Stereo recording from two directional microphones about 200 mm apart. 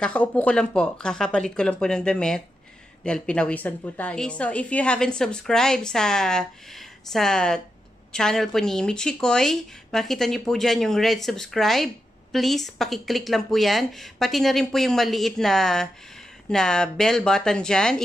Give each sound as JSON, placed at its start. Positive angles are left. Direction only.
{"t": 0.0, "sound": "a woman's voice", "side_deg": 5}